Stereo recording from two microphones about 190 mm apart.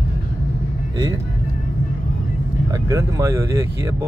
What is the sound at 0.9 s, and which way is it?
Speech, 20° right (ahead or behind).